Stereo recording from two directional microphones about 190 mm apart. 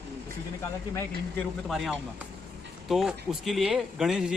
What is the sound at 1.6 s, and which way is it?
Speech, centre (ahead or behind).